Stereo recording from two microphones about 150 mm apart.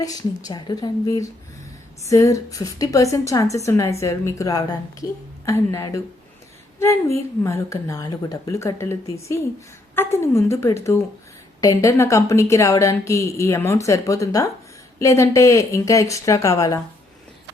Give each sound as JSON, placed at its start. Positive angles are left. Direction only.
{"t": 0.0, "sound": "a woman's voice", "side_deg": 25}
{"t": 7.4, "sound": "a woman's voice", "side_deg": 20}